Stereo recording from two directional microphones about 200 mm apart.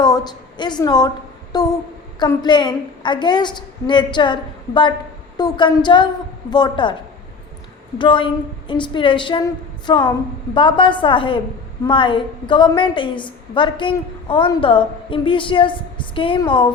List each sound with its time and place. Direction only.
0.0 s a woman's voice: 20° left (ahead or behind)
7.9 s a woman's voice: 25° left (ahead or behind)